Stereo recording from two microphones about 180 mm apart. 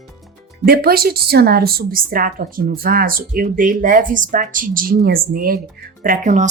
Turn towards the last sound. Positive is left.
turn(degrees=-45)  # may be behind; listen again after turning